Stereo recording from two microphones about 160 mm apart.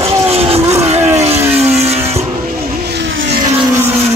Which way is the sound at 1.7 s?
40° right (ahead or behind).